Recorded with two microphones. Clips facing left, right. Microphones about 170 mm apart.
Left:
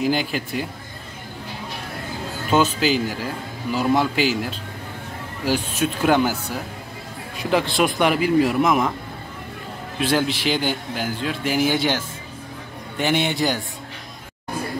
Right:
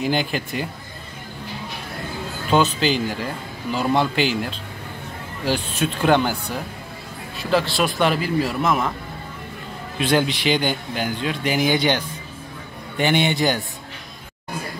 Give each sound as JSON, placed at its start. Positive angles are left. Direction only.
{"t": 0.0, "sound": "a man's voice", "side_deg": 5}
{"t": 2.5, "sound": "a man's voice", "side_deg": 5}
{"t": 7.3, "sound": "speech", "side_deg": 20}
{"t": 9.9, "sound": "a man's voice", "side_deg": 5}